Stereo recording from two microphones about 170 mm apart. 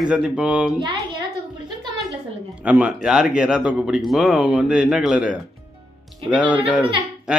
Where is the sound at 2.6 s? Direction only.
10° right (ahead or behind).